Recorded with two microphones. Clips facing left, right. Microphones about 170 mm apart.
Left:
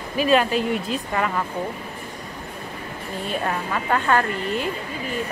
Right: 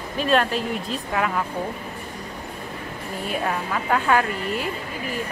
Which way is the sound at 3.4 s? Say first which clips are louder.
Even; centre (ahead or behind).